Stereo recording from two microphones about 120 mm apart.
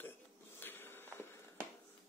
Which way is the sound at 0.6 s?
20° left (ahead or behind).